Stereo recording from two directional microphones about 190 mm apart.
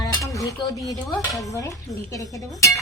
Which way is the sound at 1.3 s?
15° left (ahead or behind).